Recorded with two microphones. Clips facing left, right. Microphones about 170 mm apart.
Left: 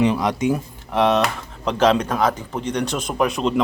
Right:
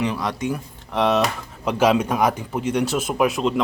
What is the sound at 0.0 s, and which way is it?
Speech, 20° left (ahead or behind).